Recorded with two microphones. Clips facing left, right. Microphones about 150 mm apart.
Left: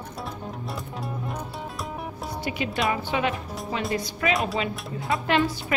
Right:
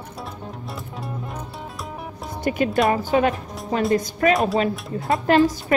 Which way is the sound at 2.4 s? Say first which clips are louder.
Right 8 dB; 45° right (ahead or behind).